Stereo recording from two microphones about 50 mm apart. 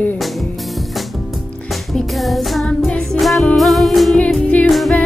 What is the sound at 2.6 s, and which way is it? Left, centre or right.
Music, centre.